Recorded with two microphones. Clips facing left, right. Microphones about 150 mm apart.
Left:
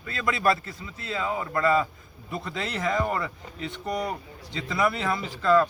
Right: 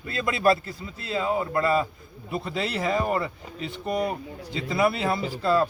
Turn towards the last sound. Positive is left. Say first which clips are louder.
# left 1 dB
turn(degrees=-30)  # may be behind; listen again after turning